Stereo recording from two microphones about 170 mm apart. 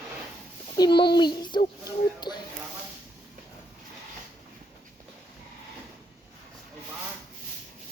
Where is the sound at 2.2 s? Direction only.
25° left (ahead or behind).